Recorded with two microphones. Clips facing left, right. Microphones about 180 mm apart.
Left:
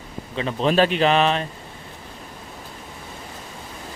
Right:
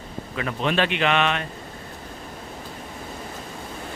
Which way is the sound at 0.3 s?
30° left (ahead or behind).